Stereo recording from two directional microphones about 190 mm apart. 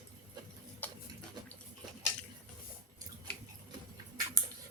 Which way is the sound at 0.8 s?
10° left (ahead or behind).